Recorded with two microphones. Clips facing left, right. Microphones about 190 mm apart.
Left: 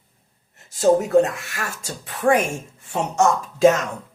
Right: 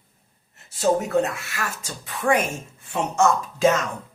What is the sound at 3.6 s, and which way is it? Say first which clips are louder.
Speech: left 5 dB; 40° left (ahead or behind).